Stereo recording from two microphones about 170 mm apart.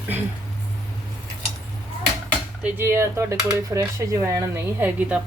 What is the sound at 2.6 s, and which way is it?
Speech, 15° right (ahead or behind).